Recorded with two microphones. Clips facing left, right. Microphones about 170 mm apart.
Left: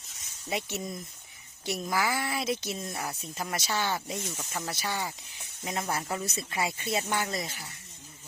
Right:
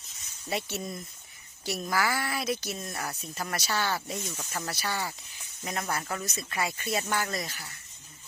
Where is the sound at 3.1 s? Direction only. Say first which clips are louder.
Even; 20° left (ahead or behind).